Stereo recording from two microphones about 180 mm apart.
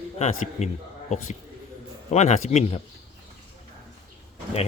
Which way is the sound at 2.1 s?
40° left (ahead or behind).